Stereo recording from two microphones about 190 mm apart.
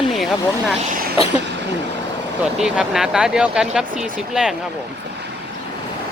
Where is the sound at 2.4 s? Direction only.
5° right (ahead or behind).